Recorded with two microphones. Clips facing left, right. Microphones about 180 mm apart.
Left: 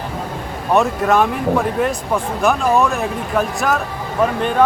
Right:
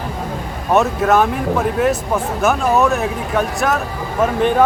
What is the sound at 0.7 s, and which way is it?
Speech, centre (ahead or behind).